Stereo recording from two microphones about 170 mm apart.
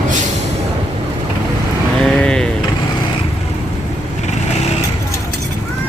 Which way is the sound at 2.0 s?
5° left (ahead or behind).